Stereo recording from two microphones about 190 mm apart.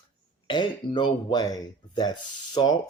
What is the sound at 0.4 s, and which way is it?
Speech, 25° left (ahead or behind).